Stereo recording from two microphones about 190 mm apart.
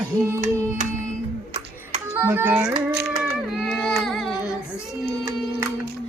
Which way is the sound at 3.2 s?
Centre (ahead or behind).